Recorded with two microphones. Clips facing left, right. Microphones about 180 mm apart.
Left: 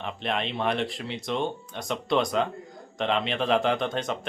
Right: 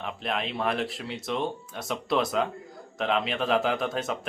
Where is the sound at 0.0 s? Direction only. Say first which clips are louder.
Left 1 dB; centre (ahead or behind).